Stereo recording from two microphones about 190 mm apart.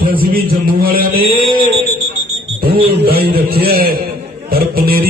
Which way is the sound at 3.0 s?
55° right (ahead or behind).